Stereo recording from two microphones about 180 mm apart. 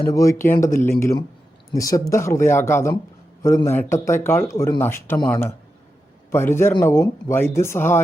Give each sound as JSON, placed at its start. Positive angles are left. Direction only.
{"t": 0.0, "sound": "speech", "side_deg": 20}